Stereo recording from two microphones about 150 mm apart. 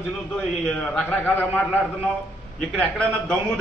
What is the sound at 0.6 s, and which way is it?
Speech, 10° left (ahead or behind).